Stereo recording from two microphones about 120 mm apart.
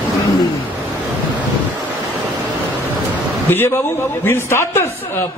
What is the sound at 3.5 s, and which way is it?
A man's voice, 20° left (ahead or behind).